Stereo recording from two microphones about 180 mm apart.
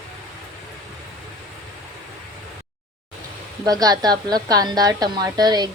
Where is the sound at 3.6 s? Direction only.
20° right (ahead or behind).